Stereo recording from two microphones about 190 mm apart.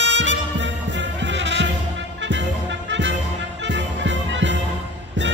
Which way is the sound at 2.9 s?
70° right (ahead or behind).